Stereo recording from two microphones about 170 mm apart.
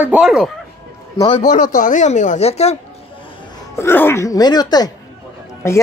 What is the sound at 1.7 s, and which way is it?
Speech, 50° left (ahead or behind).